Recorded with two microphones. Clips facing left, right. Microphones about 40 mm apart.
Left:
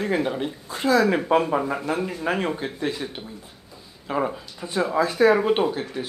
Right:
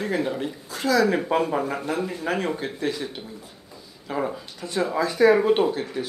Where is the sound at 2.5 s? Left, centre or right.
Centre.